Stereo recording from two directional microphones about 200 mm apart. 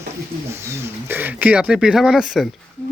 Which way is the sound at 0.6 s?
10° right (ahead or behind).